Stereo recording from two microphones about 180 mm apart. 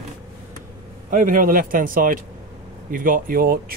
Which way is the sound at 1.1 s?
50° right (ahead or behind).